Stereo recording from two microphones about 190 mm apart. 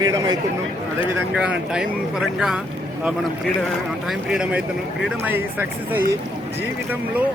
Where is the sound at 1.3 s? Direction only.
5° right (ahead or behind).